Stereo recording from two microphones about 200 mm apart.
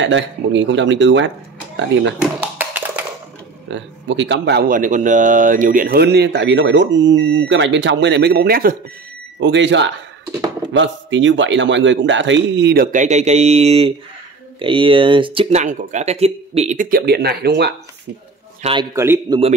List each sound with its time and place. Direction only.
0.0 s speech: 65° right (ahead or behind)
2.4 s a sound: 10° right (ahead or behind)
3.7 s speech: 65° right (ahead or behind); by 8.7 s 50° right (ahead or behind)
9.4 s speech: 60° right (ahead or behind); by 15.6 s 25° right (ahead or behind)
15.6 s speech: 40° right (ahead or behind); by 17.7 s 55° right (ahead or behind)
18.6 s speech: 25° right (ahead or behind)
18.9 s speech: 15° right (ahead or behind)